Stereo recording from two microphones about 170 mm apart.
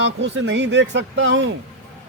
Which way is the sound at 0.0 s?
90° right.